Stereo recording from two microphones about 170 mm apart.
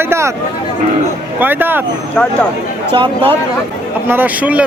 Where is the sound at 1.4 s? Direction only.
10° right (ahead or behind).